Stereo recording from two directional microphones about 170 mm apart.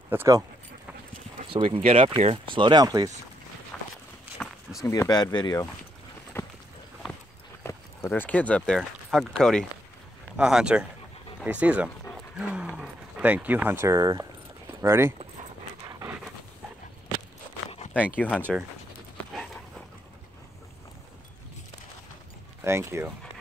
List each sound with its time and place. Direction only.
0.1 s speech: 15° right (ahead or behind)
1.5 s speech: 30° right (ahead or behind)
3.7 s walk: 5° left (ahead or behind)
4.8 s speech: 20° left (ahead or behind)
6.4 s a sound: 15° left (ahead or behind)
7.6 s speech: 15° left (ahead or behind); by 15.1 s 15° right (ahead or behind)
15.9 s a sound: 20° right (ahead or behind)
17.9 s speech: 10° left (ahead or behind)
22.6 s speech: 15° right (ahead or behind)